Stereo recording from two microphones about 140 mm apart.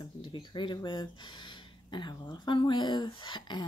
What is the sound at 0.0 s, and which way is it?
Speech, 35° left (ahead or behind).